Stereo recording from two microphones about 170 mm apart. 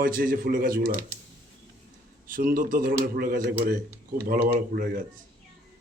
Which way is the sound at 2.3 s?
55° right (ahead or behind).